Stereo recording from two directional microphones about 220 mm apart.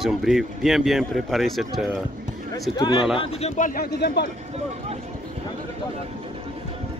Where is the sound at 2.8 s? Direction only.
20° left (ahead or behind); by 4.2 s 50° left (ahead or behind).